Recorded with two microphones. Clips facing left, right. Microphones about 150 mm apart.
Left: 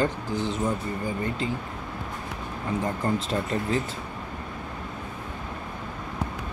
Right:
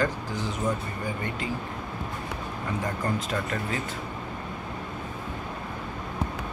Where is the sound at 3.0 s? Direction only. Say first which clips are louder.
Left 3 dB; 25° left (ahead or behind).